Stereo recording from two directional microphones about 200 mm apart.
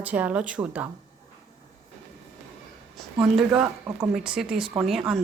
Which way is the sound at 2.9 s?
Centre (ahead or behind).